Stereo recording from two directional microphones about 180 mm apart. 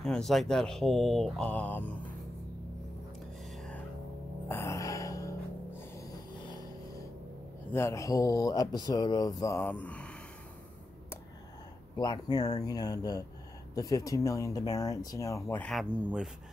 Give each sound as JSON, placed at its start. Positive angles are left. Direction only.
{"t": 0.0, "sound": "speech", "side_deg": 0}
{"t": 3.5, "sound": "music", "side_deg": 5}
{"t": 4.5, "sound": "music", "side_deg": 15}
{"t": 7.7, "sound": "speech", "side_deg": 15}
{"t": 12.0, "sound": "speech", "side_deg": 20}